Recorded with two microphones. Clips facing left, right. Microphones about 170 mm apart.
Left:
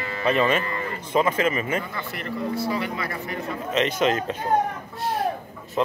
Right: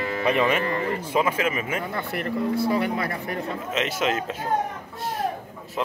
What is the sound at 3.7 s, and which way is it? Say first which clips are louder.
Speech: left 4 dB; 5° right (ahead or behind).